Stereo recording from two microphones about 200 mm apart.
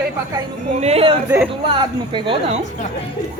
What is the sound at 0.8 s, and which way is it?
A woman's voice, 30° right (ahead or behind).